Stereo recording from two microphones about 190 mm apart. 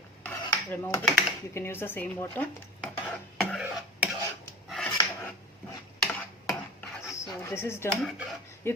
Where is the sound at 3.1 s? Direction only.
10° left (ahead or behind).